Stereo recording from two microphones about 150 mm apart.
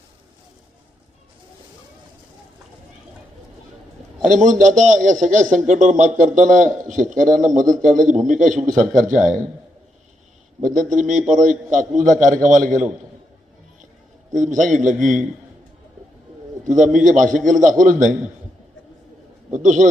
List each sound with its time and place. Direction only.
4.4 s a man's voice: 55° right (ahead or behind)
10.6 s a man's voice: 60° right (ahead or behind)
14.3 s a man's voice: 60° right (ahead or behind)
16.6 s a man's voice: 60° right (ahead or behind)
19.5 s a man's voice: 55° right (ahead or behind)